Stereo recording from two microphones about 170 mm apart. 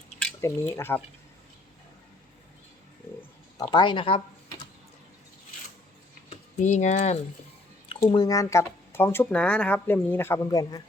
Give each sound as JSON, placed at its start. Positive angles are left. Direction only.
{"t": 0.4, "sound": "speech", "side_deg": 15}
{"t": 3.6, "sound": "speech", "side_deg": 25}
{"t": 6.3, "sound": "speech", "side_deg": 45}
{"t": 7.9, "sound": "speech", "side_deg": 30}